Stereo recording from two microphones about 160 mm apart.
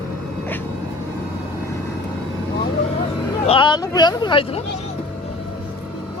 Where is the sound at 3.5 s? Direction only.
30° left (ahead or behind).